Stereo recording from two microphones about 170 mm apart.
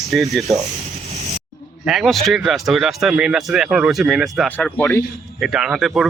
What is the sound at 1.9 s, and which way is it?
Speech, centre (ahead or behind).